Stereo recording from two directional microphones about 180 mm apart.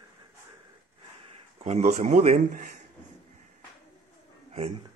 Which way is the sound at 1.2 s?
35° right (ahead or behind).